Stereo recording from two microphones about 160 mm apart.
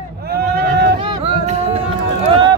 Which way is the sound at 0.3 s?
90° right.